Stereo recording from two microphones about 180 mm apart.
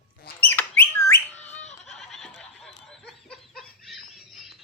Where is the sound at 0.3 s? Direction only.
10° left (ahead or behind).